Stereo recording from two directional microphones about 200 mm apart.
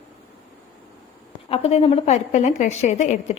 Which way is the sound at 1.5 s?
30° left (ahead or behind).